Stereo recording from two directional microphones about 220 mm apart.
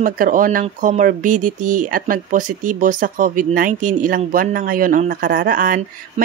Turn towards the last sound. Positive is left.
turn(degrees=-40)  # may be behind; listen again after turning